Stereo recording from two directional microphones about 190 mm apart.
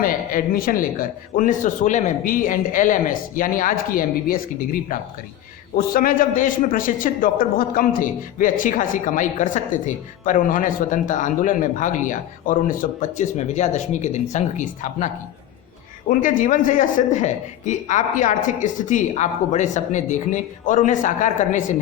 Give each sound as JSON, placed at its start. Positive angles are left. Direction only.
{"t": 0.0, "sound": "a man's voice", "side_deg": 45}